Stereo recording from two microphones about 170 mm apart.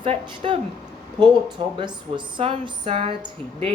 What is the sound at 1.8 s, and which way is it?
Speech, 30° right (ahead or behind).